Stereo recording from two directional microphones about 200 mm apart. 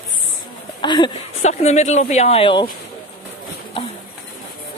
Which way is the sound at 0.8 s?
20° left (ahead or behind).